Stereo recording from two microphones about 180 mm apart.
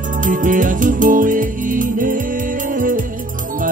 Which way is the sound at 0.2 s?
45° right (ahead or behind).